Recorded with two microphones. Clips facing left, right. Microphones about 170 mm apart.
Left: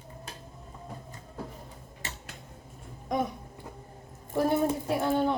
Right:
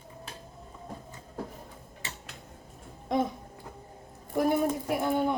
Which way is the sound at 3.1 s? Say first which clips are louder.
Right 2 dB; 25° right (ahead or behind).